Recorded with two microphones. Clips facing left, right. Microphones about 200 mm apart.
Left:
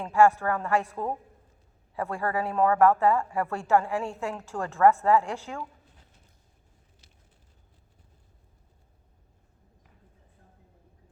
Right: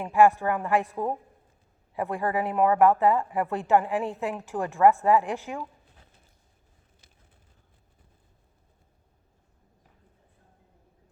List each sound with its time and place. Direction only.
0.0 s speech: 15° right (ahead or behind)